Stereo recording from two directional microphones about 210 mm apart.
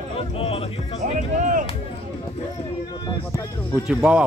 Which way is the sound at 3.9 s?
5° right (ahead or behind).